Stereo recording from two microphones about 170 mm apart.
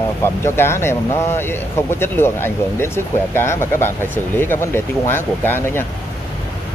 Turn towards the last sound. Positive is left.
turn(degrees=10)  # may be behind; listen again after turning